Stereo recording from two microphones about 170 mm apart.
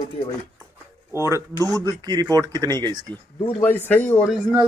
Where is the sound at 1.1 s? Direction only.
15° right (ahead or behind).